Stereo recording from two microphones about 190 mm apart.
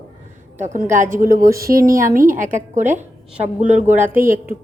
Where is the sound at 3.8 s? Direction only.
10° right (ahead or behind).